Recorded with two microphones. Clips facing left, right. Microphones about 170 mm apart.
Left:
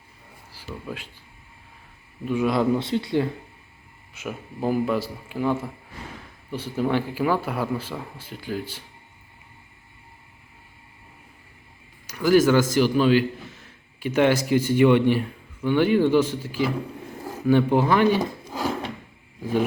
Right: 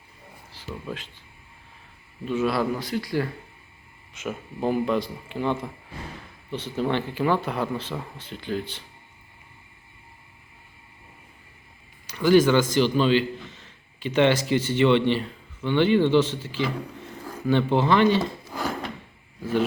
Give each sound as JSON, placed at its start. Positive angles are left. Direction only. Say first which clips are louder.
{"t": 0.5, "sound": "speech", "louder": "even", "side_deg": 10}
{"t": 2.2, "sound": "speech", "louder": "left 2 dB", "side_deg": 15}
{"t": 4.1, "sound": "speech", "louder": "right 1 dB", "side_deg": 5}
{"t": 12.1, "sound": "a man's voice", "louder": "even", "side_deg": 5}